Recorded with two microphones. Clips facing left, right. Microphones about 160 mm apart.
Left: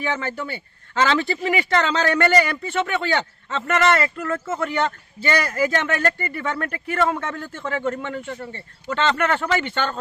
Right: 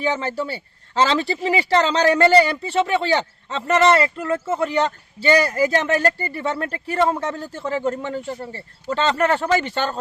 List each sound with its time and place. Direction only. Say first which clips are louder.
0.0 s speech: right 3 dB; 30° right (ahead or behind)